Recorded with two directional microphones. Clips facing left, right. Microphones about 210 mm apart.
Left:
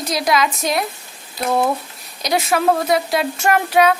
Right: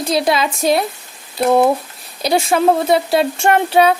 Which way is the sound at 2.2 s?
30° right (ahead or behind).